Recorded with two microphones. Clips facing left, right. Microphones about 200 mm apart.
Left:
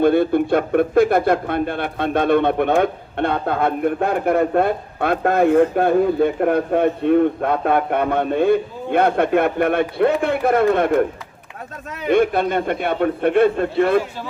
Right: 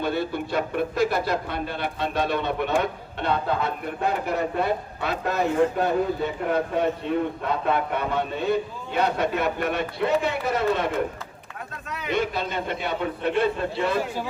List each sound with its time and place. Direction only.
0.0 s a man's voice: 55° left (ahead or behind)
12.0 s a man's voice: 55° left (ahead or behind)